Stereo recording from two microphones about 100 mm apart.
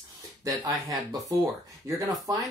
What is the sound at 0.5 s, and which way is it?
Speech, 35° right (ahead or behind).